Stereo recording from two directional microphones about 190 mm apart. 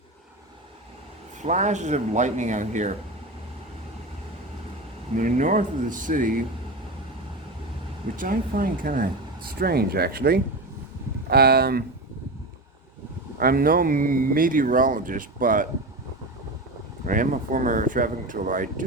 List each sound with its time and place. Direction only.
1.4 s speech: 40° right (ahead or behind)
5.1 s speech: 40° right (ahead or behind)
8.1 s speech: 45° right (ahead or behind)
13.4 s speech: 50° right (ahead or behind)
17.1 s speech: 45° right (ahead or behind)